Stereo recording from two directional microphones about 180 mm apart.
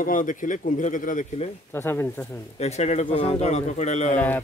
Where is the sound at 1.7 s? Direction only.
15° left (ahead or behind).